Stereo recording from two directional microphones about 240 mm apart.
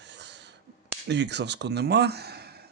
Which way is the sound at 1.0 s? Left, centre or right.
Right.